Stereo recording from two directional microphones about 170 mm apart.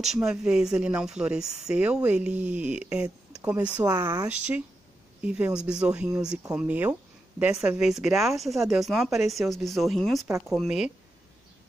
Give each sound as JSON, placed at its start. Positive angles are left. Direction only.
{"t": 0.0, "sound": "speech", "side_deg": -5}
{"t": 3.8, "sound": "speech", "side_deg": -20}
{"t": 4.3, "sound": "speech", "side_deg": -10}